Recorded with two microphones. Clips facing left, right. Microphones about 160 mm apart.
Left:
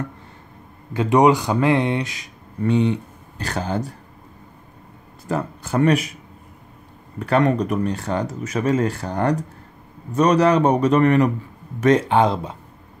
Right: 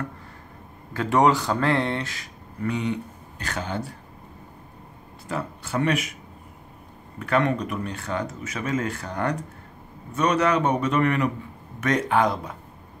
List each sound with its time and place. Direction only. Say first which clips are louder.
0.9 s speech: left 5 dB; 15° left (ahead or behind)
2.6 s speech: left 7 dB; 30° left (ahead or behind)
5.3 s speech: left 5 dB; 40° left (ahead or behind)
7.2 s speech: left 5 dB; 35° left (ahead or behind)